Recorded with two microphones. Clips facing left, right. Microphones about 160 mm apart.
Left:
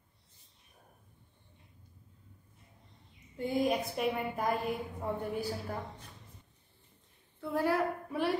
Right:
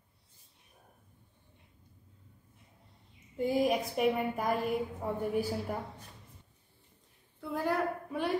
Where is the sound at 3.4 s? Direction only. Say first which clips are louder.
Right 2 dB; 5° right (ahead or behind).